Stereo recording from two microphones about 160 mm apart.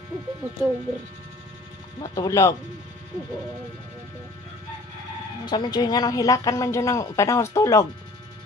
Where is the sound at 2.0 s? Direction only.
30° left (ahead or behind).